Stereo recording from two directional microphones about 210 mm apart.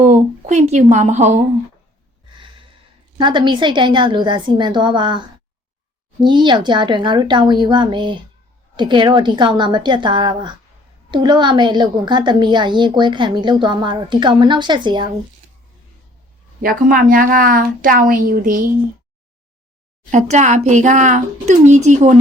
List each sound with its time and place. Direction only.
0.0 s speech: 35° right (ahead or behind)
3.2 s a woman's voice: 20° right (ahead or behind)
16.6 s a woman's voice: 40° right (ahead or behind)
20.1 s speech: 35° right (ahead or behind)